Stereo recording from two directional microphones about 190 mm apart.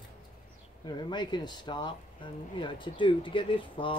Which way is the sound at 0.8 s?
25° left (ahead or behind).